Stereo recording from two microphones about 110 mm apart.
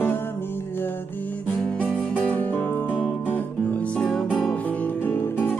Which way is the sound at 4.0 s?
5° left (ahead or behind).